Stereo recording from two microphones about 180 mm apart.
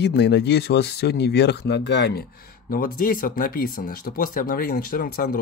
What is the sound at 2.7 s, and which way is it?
Speech, 50° left (ahead or behind).